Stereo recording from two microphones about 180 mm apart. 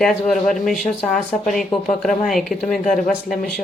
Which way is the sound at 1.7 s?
25° left (ahead or behind).